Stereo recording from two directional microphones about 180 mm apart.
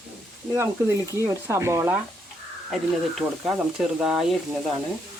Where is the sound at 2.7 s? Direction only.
Centre (ahead or behind).